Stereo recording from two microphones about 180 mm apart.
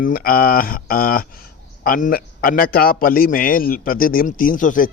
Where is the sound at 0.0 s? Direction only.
55° left (ahead or behind).